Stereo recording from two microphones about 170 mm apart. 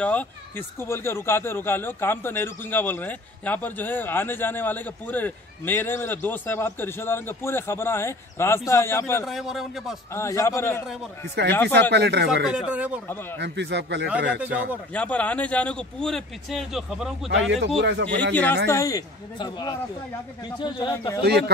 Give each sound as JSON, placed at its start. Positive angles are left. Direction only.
{"t": 0.0, "sound": "speech", "side_deg": 10}
{"t": 9.2, "sound": "speech", "side_deg": 0}
{"t": 10.1, "sound": "speech", "side_deg": 15}
{"t": 11.7, "sound": "speech", "side_deg": -80}
{"t": 12.4, "sound": "speech", "side_deg": -5}
{"t": 13.4, "sound": "speech", "side_deg": -90}
{"t": 14.3, "sound": "speech", "side_deg": -10}
{"t": 15.0, "sound": "speech", "side_deg": 10}
{"t": 17.5, "sound": "speech", "side_deg": -90}
{"t": 18.3, "sound": "speech", "side_deg": 10}
{"t": 21.2, "sound": "speech", "side_deg": -75}